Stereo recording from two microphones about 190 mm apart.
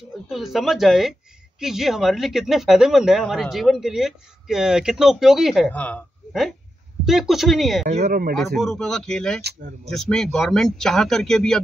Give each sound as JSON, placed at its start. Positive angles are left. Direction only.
{"t": 0.3, "sound": "speech", "side_deg": 0}
{"t": 7.8, "sound": "speech", "side_deg": -35}
{"t": 8.1, "sound": "speech", "side_deg": -50}
{"t": 8.4, "sound": "speech", "side_deg": 0}